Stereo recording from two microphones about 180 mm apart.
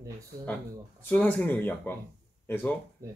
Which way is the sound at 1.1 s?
5° left (ahead or behind).